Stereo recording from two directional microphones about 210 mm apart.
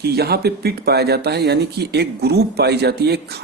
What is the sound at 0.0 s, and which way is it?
Speech, 50° right (ahead or behind).